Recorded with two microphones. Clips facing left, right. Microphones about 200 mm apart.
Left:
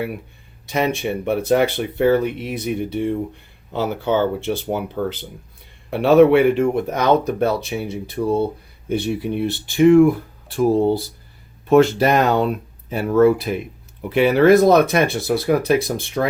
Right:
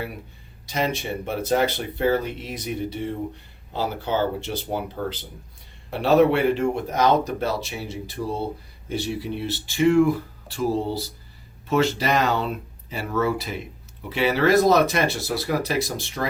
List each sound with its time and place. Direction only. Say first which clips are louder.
0.7 s speech: left 5 dB; 60° left (ahead or behind)